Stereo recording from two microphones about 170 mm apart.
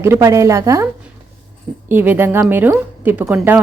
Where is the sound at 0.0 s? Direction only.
15° right (ahead or behind).